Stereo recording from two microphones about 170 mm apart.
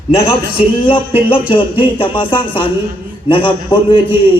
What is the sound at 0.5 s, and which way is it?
A man's voice, 30° left (ahead or behind).